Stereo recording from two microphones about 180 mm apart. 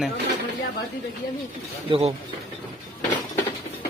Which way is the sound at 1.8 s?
30° right (ahead or behind).